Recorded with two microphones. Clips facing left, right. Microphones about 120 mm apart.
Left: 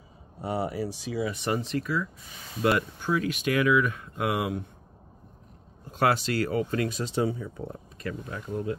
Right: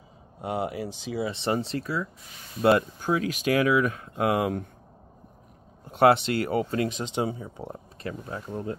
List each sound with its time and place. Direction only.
0.4 s speech: 15° right (ahead or behind); by 4.6 s 35° right (ahead or behind)
5.9 s speech: 25° right (ahead or behind)